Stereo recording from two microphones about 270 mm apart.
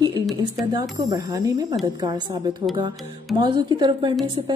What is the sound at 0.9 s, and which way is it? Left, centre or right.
A woman's voice, centre.